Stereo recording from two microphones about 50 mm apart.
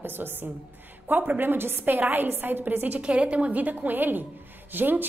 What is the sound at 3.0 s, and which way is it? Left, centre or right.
A woman's voice, right.